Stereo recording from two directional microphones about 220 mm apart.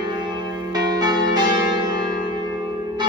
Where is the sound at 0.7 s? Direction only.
20° right (ahead or behind).